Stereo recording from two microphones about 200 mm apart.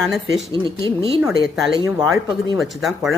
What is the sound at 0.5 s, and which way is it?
Speech, 25° right (ahead or behind).